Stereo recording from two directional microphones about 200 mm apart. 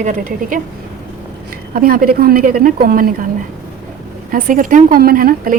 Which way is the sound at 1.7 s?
45° right (ahead or behind).